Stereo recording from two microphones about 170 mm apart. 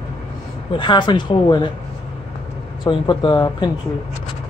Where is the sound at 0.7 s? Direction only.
25° left (ahead or behind).